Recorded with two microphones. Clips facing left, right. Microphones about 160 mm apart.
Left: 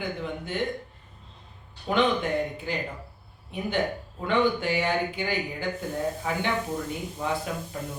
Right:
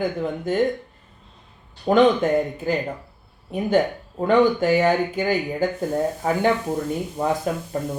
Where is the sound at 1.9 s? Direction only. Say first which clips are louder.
Right 8 dB; 45° right (ahead or behind).